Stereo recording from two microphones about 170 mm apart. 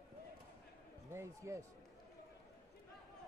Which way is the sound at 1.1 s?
15° right (ahead or behind).